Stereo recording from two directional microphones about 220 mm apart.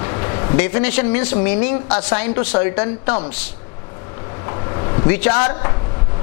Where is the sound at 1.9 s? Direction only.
20° left (ahead or behind).